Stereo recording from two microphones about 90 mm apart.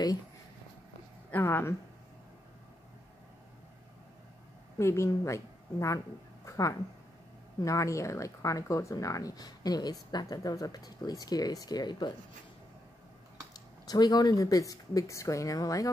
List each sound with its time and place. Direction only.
1.3 s a woman's voice: 25° left (ahead or behind)
4.7 s a woman's voice: 30° left (ahead or behind)
6.4 s a sound: 35° left (ahead or behind)
7.6 s speech: 35° left (ahead or behind); by 12.1 s 55° left (ahead or behind)
13.8 s speech: 50° left (ahead or behind)